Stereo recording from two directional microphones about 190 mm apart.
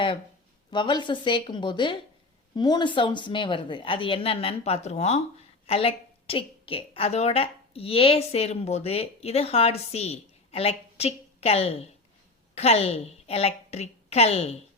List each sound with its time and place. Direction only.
0.7 s a woman's voice: 25° left (ahead or behind)